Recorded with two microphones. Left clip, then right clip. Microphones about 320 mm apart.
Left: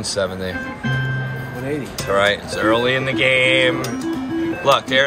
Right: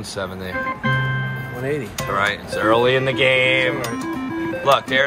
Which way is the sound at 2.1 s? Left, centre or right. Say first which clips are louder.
Left 4 dB; centre.